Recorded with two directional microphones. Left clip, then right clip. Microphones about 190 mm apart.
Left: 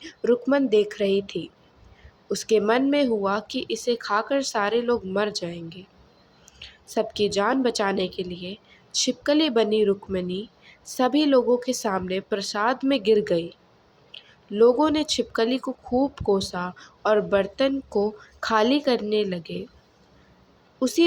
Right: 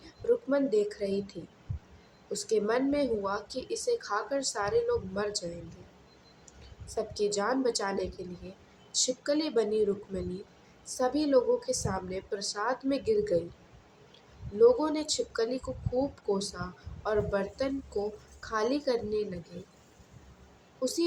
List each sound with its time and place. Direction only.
0.3 s speech: 45° left (ahead or behind)
6.9 s speech: 40° left (ahead or behind)
14.6 s speech: 40° left (ahead or behind)
20.7 s speech: 45° left (ahead or behind)